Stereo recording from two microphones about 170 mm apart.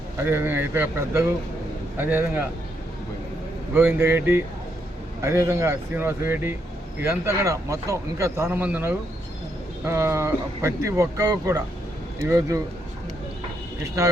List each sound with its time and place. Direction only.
0.2 s a man's voice: 15° right (ahead or behind)
3.8 s a man's voice: 10° right (ahead or behind)